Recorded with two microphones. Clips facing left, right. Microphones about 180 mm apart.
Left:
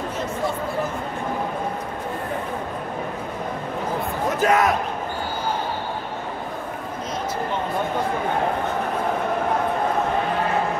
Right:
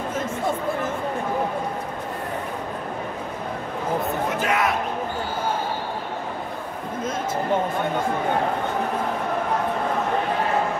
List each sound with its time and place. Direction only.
4.4 s basketball bounce: 40° left (ahead or behind)